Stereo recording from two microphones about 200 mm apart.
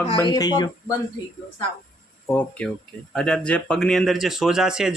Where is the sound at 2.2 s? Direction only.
10° left (ahead or behind).